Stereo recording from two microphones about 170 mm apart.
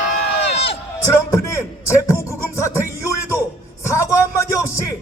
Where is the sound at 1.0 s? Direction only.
20° left (ahead or behind).